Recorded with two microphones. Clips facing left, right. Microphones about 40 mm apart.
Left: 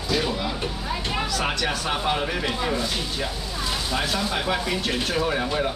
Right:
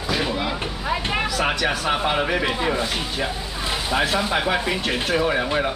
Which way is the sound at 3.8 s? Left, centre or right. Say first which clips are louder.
Right 6 dB; right.